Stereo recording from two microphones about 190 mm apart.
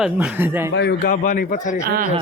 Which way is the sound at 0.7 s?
65° left (ahead or behind).